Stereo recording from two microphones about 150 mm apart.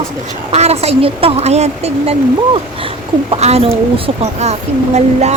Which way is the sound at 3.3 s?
40° right (ahead or behind).